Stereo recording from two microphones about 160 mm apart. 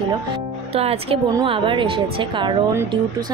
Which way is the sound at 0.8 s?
40° right (ahead or behind).